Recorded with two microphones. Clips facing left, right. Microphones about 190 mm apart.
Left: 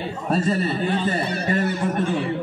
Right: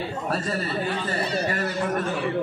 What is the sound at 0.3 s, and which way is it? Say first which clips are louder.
A man's voice: left 8 dB; 20° left (ahead or behind).